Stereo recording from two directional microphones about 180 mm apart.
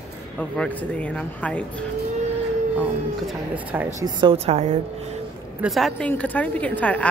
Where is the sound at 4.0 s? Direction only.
25° right (ahead or behind).